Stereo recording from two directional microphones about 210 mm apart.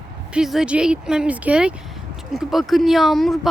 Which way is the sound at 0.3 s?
5° right (ahead or behind).